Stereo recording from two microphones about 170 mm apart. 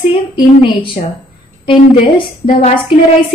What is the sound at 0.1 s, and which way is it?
A woman's voice, 30° left (ahead or behind).